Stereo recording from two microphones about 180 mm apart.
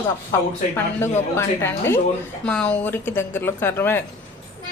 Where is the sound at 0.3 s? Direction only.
15° left (ahead or behind).